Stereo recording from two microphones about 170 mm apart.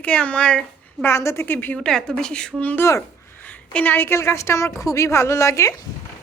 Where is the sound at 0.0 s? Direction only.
5° left (ahead or behind).